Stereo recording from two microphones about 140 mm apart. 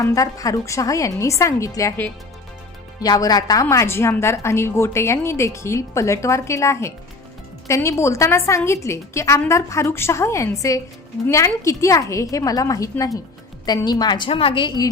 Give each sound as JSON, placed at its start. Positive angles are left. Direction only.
{"t": 0.0, "sound": "a woman's voice", "side_deg": 25}